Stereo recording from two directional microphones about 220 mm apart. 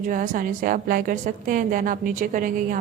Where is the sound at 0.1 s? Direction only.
40° right (ahead or behind).